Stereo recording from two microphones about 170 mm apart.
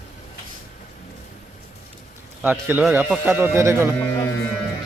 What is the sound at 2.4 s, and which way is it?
A man's voice, 10° right (ahead or behind).